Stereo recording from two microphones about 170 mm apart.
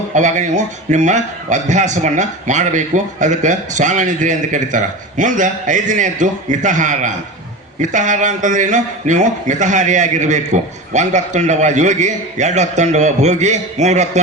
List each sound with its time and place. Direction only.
0.1 s a man's voice: 45° right (ahead or behind)